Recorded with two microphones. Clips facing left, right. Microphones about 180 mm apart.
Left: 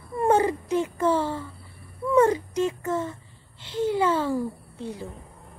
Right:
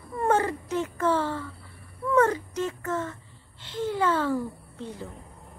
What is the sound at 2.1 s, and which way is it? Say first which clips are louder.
A woman's voice: left 3 dB; 15° left (ahead or behind).